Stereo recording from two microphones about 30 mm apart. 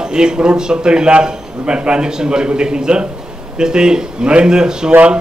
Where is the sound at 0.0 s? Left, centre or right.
Right.